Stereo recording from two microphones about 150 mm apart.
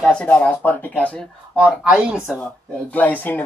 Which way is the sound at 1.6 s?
5° right (ahead or behind).